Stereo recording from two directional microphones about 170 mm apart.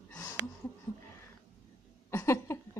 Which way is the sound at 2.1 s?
15° left (ahead or behind).